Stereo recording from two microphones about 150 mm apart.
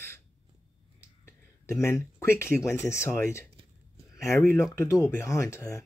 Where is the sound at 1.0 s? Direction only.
15° left (ahead or behind).